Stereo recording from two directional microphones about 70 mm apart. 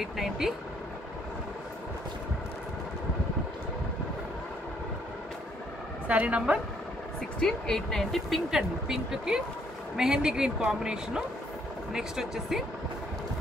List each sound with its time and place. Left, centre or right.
0.0 s speech: centre
6.0 s speech: centre
7.3 s a woman's voice: centre